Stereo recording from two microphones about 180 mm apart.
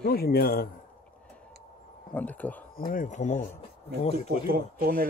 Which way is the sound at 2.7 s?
50° left (ahead or behind).